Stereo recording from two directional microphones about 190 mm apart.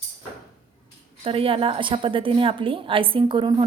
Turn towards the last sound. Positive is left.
turn(degrees=-25)  # may be behind; listen again after turning